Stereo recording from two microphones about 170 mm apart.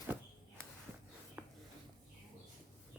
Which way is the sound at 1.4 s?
10° right (ahead or behind).